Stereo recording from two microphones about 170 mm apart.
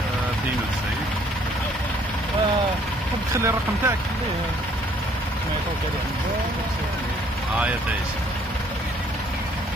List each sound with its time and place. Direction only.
3.3 s speech: 15° right (ahead or behind)